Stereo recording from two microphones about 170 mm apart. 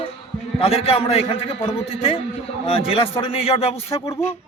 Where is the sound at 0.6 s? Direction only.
35° left (ahead or behind).